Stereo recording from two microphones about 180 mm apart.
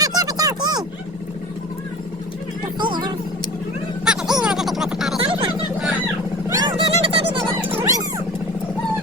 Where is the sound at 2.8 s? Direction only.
25° right (ahead or behind).